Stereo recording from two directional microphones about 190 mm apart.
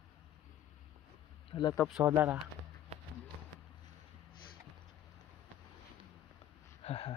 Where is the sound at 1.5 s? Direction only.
25° left (ahead or behind).